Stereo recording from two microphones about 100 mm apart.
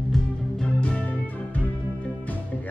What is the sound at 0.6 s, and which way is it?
Music, 10° left (ahead or behind).